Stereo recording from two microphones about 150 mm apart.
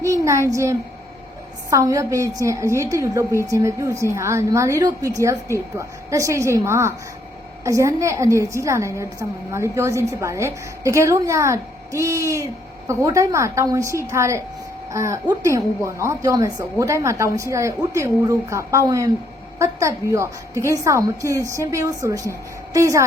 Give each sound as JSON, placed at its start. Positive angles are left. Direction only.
{"t": 0.0, "sound": "a woman's voice", "side_deg": -20}